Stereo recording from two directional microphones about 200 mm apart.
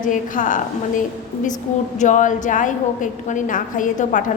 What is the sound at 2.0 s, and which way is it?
A woman's voice, 40° left (ahead or behind).